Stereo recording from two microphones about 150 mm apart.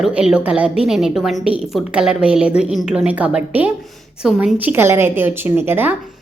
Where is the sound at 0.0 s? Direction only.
5° right (ahead or behind).